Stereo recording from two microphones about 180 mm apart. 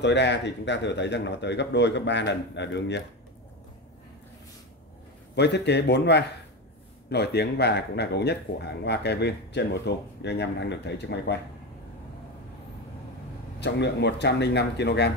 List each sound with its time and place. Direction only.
0.0 s speech: 75° left (ahead or behind)
5.3 s speech: 70° left (ahead or behind)
13.6 s speech: 70° left (ahead or behind)